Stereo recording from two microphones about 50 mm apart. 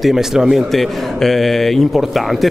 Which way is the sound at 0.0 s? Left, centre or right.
Centre.